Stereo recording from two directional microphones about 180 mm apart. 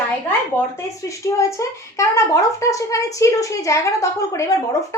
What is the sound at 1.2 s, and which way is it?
Speech, 15° left (ahead or behind).